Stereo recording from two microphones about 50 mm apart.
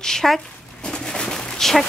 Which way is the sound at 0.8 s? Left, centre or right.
Centre.